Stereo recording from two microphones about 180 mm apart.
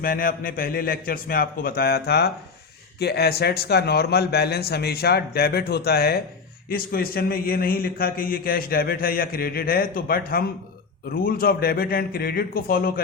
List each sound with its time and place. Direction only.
0.0 s a man's voice: 55° left (ahead or behind)